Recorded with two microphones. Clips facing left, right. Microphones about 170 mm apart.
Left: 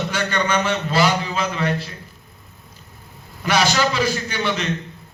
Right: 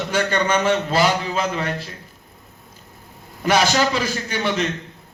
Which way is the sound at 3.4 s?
45° right (ahead or behind).